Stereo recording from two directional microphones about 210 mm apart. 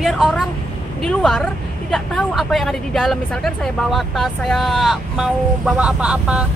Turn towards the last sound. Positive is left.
turn(degrees=-5)  # may be behind; listen again after turning